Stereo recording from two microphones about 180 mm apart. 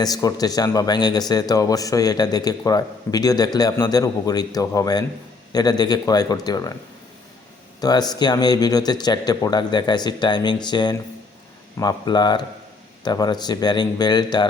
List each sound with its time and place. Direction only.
0.0 s a man's voice: 20° left (ahead or behind)
7.8 s a man's voice: 20° left (ahead or behind)